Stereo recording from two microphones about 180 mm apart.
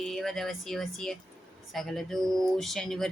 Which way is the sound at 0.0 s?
Centre (ahead or behind).